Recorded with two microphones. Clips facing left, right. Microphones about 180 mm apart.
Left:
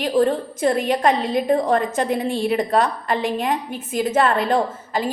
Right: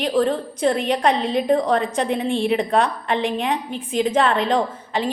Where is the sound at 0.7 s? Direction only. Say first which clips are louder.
Left 3 dB; 45° left (ahead or behind).